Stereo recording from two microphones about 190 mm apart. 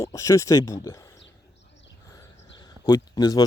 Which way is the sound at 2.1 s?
20° left (ahead or behind).